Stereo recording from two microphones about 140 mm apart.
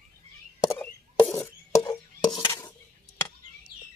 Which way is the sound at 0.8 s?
15° left (ahead or behind).